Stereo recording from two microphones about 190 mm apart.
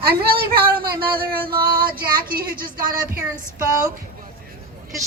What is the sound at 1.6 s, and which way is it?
Female singing, 25° right (ahead or behind).